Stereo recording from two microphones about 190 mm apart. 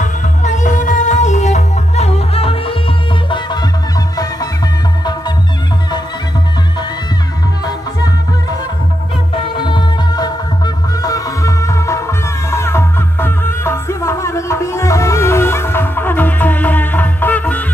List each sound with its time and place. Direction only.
0.0 s music: 40° left (ahead or behind)
9.6 s music: 25° left (ahead or behind); by 17.6 s 10° left (ahead or behind)